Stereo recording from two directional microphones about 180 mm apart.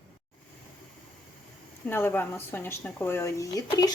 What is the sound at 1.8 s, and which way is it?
Speech, 10° left (ahead or behind).